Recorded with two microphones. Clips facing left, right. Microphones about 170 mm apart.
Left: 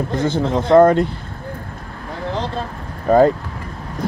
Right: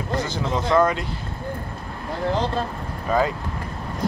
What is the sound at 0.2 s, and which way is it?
Speech, 50° left (ahead or behind).